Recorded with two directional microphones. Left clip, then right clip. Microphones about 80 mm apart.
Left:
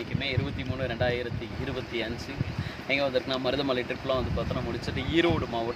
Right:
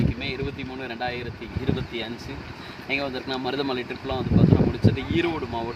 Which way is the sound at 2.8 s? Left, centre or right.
Left.